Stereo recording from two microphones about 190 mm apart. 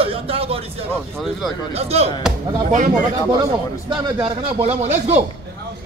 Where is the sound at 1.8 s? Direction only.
35° right (ahead or behind).